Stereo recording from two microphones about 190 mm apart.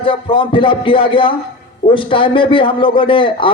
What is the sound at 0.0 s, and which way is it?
A man's voice, 25° left (ahead or behind).